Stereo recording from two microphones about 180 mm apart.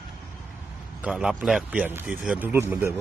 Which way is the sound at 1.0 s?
5° right (ahead or behind).